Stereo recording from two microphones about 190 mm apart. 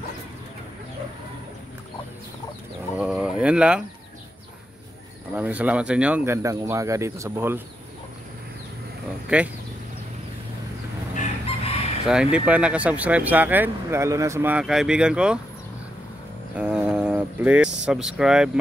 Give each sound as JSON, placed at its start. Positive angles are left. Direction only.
{"t": 3.0, "sound": "bird", "side_deg": -5}
{"t": 5.3, "sound": "speech", "side_deg": -10}
{"t": 9.3, "sound": "speech", "side_deg": -5}
{"t": 11.1, "sound": "chicken", "side_deg": 30}
{"t": 12.1, "sound": "speech", "side_deg": -5}
{"t": 16.5, "sound": "vehicle", "side_deg": -5}
{"t": 17.8, "sound": "speech", "side_deg": -5}